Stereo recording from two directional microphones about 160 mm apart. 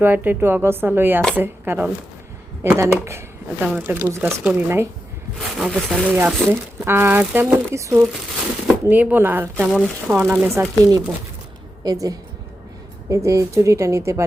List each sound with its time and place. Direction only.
0.0 s speech: 10° right (ahead or behind)
5.5 s speech: 5° right (ahead or behind)